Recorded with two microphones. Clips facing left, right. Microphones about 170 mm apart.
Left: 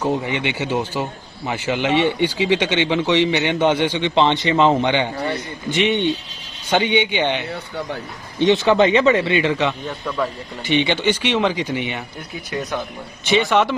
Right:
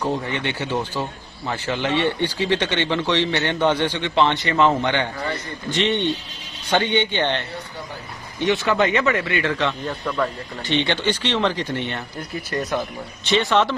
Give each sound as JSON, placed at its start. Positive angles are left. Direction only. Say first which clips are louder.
{"t": 0.1, "sound": "a man's voice", "louder": "left 3 dB", "side_deg": 15}
{"t": 8.4, "sound": "speech", "louder": "left 5 dB", "side_deg": 25}
{"t": 9.8, "sound": "a man's voice", "louder": "even", "side_deg": 0}
{"t": 13.3, "sound": "a man's voice", "louder": "left 2 dB", "side_deg": 15}